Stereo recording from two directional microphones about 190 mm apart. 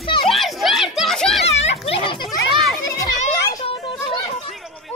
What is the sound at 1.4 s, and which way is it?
Children playing, 35° left (ahead or behind).